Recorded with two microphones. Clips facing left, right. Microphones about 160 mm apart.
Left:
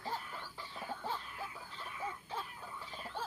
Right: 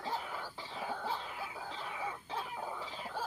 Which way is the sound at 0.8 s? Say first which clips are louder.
Right 3 dB; 90° right.